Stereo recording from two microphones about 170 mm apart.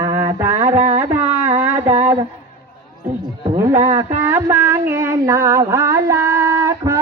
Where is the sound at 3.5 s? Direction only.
15° right (ahead or behind).